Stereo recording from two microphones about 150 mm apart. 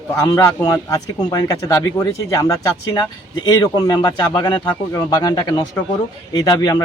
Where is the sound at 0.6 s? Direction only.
25° left (ahead or behind).